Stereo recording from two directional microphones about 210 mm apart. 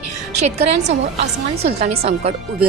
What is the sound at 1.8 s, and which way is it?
Speech, 30° right (ahead or behind).